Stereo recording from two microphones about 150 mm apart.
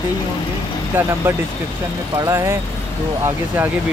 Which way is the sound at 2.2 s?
20° right (ahead or behind).